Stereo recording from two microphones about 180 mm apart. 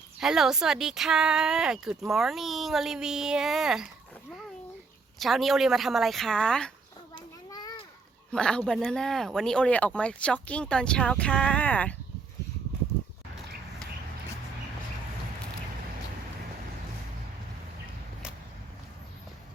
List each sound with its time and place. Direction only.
0.2 s speech: centre (ahead or behind)
5.2 s speech: centre (ahead or behind)
7.2 s children playing: 20° left (ahead or behind)
8.3 s speech: 5° left (ahead or behind)